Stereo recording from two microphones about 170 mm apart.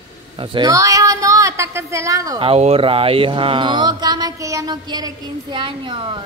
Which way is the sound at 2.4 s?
35° right (ahead or behind).